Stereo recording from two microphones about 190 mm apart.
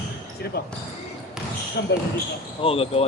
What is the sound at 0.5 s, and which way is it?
Speech, 55° left (ahead or behind).